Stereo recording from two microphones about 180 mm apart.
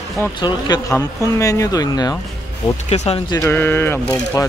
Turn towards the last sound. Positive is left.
turn(degrees=15)  # may be behind; listen again after turning